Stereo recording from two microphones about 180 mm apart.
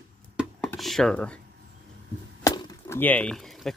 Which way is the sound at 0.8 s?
Centre (ahead or behind).